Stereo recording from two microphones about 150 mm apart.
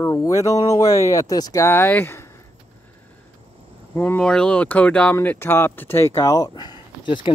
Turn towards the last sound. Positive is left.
turn(degrees=30)  # may be behind; listen again after turning